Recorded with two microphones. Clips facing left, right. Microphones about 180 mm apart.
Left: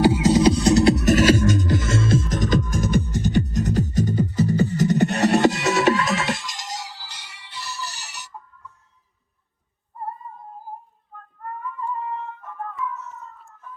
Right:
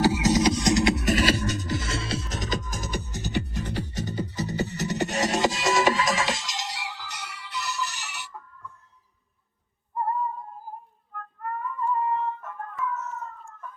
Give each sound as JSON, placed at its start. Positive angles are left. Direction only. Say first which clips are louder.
{"t": 0.0, "sound": "music", "louder": "left 5 dB", "side_deg": 30}
{"t": 10.0, "sound": "synthetic singing", "louder": "right 6 dB", "side_deg": -65}